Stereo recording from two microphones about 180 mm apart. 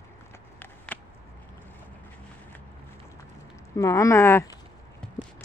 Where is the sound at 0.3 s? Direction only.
10° left (ahead or behind).